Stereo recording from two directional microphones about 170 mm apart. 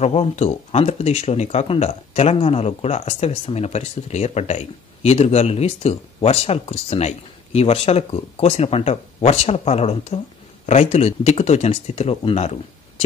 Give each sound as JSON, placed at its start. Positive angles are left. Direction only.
{"t": 0.0, "sound": "speech", "side_deg": 40}